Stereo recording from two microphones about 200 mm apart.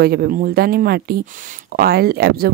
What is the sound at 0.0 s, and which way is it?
Speech, 50° right (ahead or behind).